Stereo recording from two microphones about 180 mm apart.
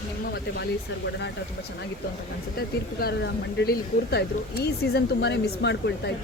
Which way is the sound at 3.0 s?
65° left (ahead or behind).